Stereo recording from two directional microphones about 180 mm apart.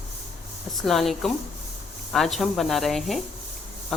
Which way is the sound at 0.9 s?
Centre (ahead or behind).